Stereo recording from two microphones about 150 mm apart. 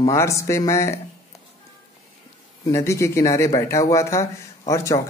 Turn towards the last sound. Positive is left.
turn(degrees=20)  # may be behind; listen again after turning